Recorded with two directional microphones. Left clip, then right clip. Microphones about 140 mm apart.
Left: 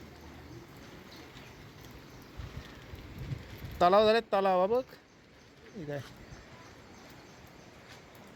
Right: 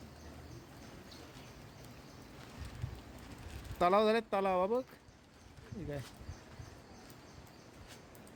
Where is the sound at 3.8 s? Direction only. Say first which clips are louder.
Left 6 dB; 15° right (ahead or behind).